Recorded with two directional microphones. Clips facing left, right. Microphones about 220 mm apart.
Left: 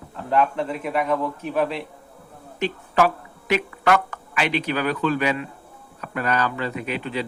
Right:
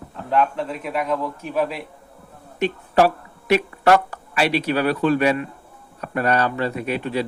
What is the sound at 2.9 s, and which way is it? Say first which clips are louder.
Speech: right 3 dB; 40° right (ahead or behind).